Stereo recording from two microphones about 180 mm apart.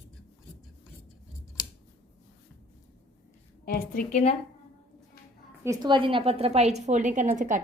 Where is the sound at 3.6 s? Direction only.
50° left (ahead or behind).